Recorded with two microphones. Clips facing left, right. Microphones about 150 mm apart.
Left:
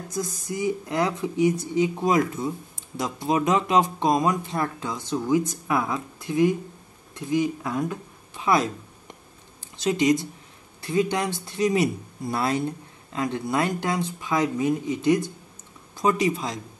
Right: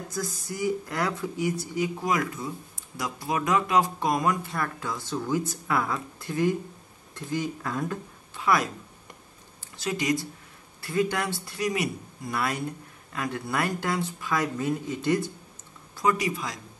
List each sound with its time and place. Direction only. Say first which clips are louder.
0.2 s speech: left 3 dB; 20° left (ahead or behind)